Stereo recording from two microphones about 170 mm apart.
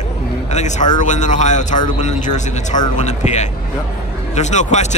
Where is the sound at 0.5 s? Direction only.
45° left (ahead or behind).